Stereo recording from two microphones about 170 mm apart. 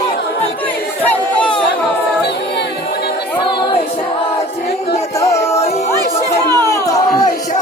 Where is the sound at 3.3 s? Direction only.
30° left (ahead or behind).